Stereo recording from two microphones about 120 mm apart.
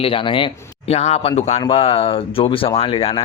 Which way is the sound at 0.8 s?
60° left (ahead or behind).